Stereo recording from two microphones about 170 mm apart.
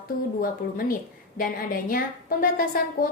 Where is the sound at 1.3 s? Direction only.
55° left (ahead or behind).